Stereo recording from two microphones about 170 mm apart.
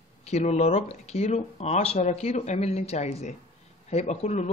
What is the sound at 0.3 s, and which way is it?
Speech, 40° left (ahead or behind).